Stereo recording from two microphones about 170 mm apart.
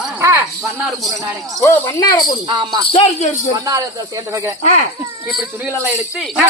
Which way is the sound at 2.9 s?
40° left (ahead or behind).